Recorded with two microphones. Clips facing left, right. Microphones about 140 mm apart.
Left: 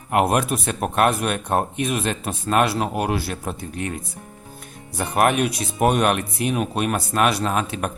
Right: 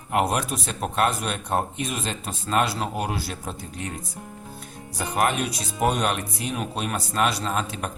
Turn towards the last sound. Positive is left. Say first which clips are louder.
# left 4 dB
turn(degrees=60)  # may be behind; listen again after turning